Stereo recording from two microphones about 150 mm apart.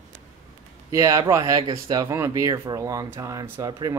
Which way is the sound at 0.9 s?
20° right (ahead or behind).